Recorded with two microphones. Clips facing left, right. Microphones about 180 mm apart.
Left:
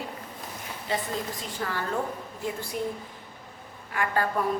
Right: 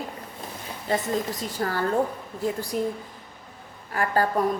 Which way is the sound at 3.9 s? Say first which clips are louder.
Right 4 dB; 35° right (ahead or behind).